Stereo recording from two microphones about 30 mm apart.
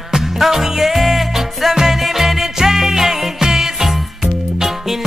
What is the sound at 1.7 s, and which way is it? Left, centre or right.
Music, centre.